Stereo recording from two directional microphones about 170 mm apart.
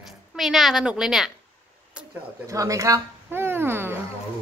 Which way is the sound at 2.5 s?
20° right (ahead or behind).